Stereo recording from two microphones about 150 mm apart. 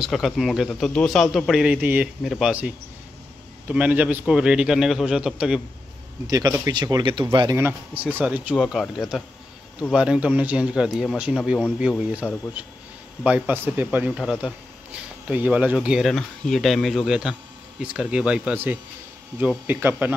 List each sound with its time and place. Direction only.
0.0 s speech: centre (ahead or behind)
6.2 s speech: 25° right (ahead or behind)
7.5 s speech: 10° right (ahead or behind)
8.5 s speech: centre (ahead or behind)